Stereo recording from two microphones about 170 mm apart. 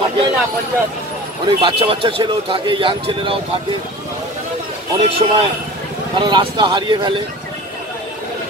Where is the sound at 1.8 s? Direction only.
30° right (ahead or behind).